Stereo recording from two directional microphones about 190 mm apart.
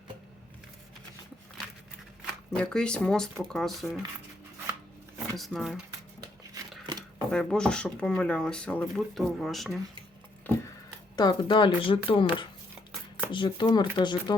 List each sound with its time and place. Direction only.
2.6 s speech: 5° left (ahead or behind)
5.4 s speech: centre (ahead or behind)
6.1 s a sound: 20° right (ahead or behind)
7.3 s speech: 5° left (ahead or behind)
10.5 s a sound: 10° left (ahead or behind)
11.2 s speech: 25° left (ahead or behind)